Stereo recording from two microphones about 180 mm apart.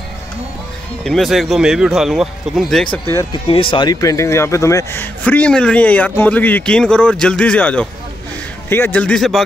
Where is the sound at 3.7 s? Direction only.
20° left (ahead or behind).